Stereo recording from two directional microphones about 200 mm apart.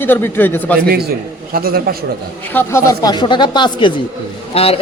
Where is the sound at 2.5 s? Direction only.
15° left (ahead or behind).